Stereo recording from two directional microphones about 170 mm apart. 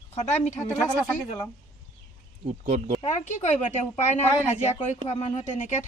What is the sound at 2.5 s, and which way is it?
Speech, 40° right (ahead or behind).